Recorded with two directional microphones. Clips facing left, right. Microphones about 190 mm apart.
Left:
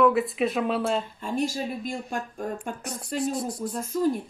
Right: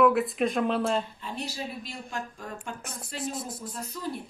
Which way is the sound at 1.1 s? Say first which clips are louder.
Left 8 dB; 45° left (ahead or behind).